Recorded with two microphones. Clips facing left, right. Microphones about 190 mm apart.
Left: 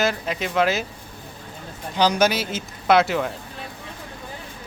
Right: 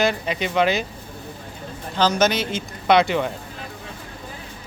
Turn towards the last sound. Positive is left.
turn(degrees=0)  # may be behind; listen again after turning